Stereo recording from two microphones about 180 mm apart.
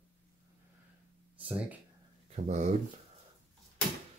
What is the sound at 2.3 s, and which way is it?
Speech, 40° right (ahead or behind).